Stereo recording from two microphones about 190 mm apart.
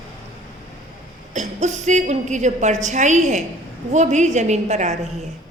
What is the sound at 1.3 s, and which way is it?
A woman's voice, 40° right (ahead or behind).